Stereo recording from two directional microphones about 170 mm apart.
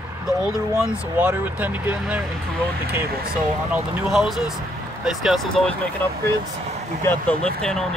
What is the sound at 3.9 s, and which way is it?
Speech, 5° right (ahead or behind).